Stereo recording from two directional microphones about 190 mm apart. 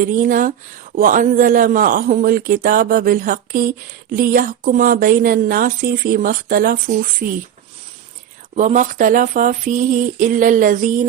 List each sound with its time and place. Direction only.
0.0 s speech: 45° right (ahead or behind)
8.5 s speech: 40° right (ahead or behind)